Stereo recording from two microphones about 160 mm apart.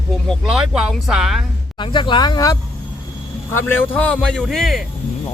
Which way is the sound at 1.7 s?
30° left (ahead or behind).